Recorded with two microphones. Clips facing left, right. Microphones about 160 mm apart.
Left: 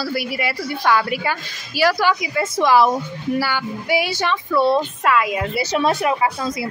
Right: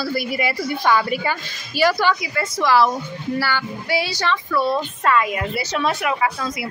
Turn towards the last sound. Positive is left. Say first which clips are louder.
# left 2 dB
turn(degrees=30)  # may be behind; listen again after turning